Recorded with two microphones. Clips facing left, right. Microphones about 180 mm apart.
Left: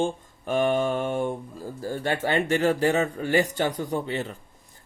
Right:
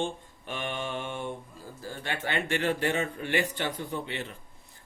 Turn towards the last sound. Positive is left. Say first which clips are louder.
# left 7 dB
turn(degrees=40)  # may be behind; listen again after turning